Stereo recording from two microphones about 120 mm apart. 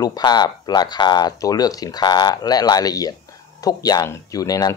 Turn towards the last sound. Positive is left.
turn(degrees=30)  # may be behind; listen again after turning